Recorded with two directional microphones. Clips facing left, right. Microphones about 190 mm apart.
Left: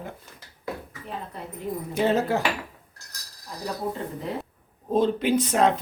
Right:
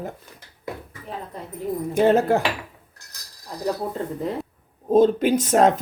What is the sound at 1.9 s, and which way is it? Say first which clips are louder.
Speech: right 5 dB; 50° right (ahead or behind).